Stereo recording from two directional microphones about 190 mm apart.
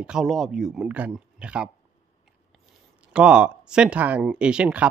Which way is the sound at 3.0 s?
5° right (ahead or behind).